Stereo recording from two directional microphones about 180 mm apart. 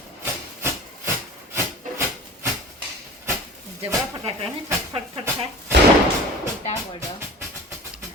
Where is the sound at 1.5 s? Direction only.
15° right (ahead or behind).